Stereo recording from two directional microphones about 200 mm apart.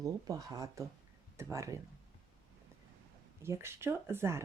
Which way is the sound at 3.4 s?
15° right (ahead or behind).